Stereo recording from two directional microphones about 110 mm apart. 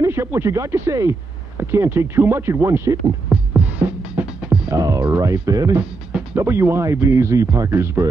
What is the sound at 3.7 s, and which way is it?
Music, 15° right (ahead or behind).